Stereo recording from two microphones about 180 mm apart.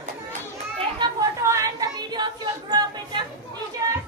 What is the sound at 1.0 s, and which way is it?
Chatter, 25° right (ahead or behind).